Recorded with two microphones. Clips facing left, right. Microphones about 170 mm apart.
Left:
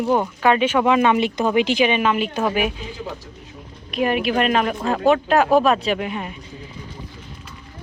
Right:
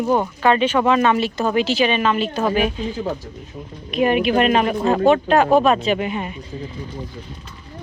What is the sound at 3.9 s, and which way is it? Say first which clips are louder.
Speech: right 3 dB; centre (ahead or behind).